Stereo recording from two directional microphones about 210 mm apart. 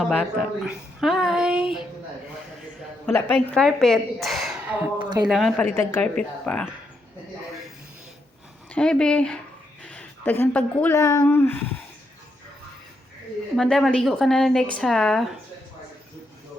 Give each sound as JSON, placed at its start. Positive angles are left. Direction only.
{"t": 0.0, "sound": "speech", "side_deg": 0}
{"t": 3.1, "sound": "speech", "side_deg": 10}
{"t": 4.9, "sound": "speech", "side_deg": -20}
{"t": 5.3, "sound": "speech", "side_deg": 0}
{"t": 8.7, "sound": "a woman's voice", "side_deg": 5}
{"t": 13.6, "sound": "speech", "side_deg": 0}